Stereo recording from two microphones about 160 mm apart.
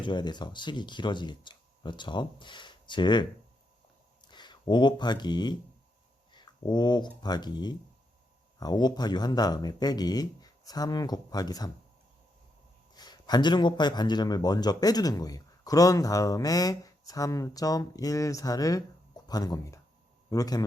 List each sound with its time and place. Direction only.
0.0 s a man's voice: 30° left (ahead or behind)
4.3 s a man's voice: 30° left (ahead or behind)
12.9 s a man's voice: 25° left (ahead or behind)